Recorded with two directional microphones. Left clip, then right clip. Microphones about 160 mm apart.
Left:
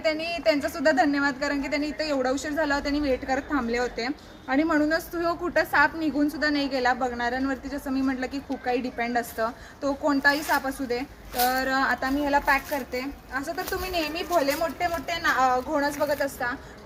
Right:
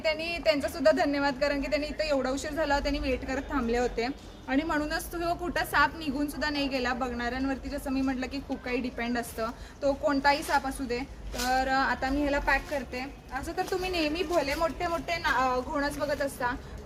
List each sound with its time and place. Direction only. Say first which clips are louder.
0.0 s a woman's voice: left 3 dB; 15° right (ahead or behind); by 4.1 s 45° right (ahead or behind)
4.5 s a woman's voice: left 6 dB; 55° right (ahead or behind); by 12.5 s 25° right (ahead or behind)
13.3 s speech: left 2 dB; 15° right (ahead or behind)